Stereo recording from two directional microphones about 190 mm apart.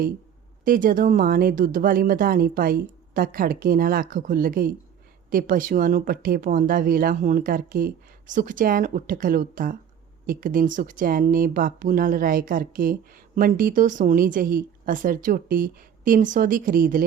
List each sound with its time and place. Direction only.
0.6 s speech: 45° right (ahead or behind)